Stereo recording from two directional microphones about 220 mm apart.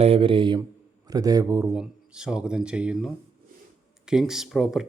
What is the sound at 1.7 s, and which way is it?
Speech, 5° right (ahead or behind).